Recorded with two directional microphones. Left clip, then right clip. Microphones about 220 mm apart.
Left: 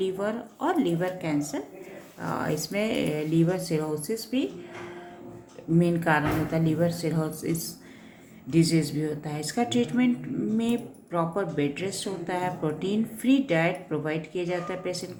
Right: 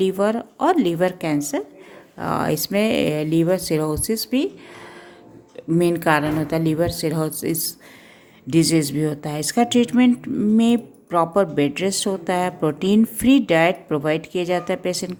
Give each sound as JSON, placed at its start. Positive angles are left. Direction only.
{"t": 0.0, "sound": "a woman's voice", "side_deg": -50}
{"t": 5.8, "sound": "a woman's voice", "side_deg": -50}